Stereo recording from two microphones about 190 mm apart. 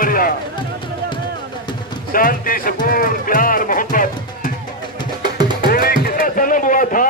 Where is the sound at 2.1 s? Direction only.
50° left (ahead or behind).